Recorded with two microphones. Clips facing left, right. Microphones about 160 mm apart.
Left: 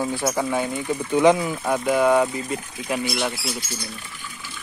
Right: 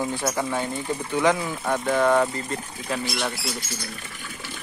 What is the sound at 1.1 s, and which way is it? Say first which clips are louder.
Speech: left 5 dB; 20° left (ahead or behind).